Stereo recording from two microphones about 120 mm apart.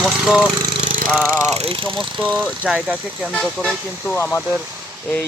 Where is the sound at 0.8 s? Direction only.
90° right.